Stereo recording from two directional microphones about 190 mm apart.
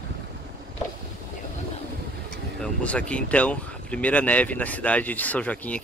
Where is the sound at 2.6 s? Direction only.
5° left (ahead or behind).